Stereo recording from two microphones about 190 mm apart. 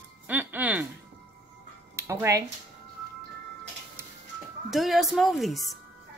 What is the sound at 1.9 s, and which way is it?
Speech, 15° right (ahead or behind).